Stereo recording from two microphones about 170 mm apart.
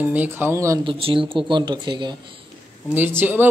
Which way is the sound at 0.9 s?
30° right (ahead or behind).